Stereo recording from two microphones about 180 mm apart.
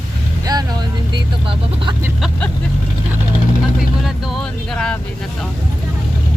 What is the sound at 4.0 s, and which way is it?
Speech, 5° left (ahead or behind).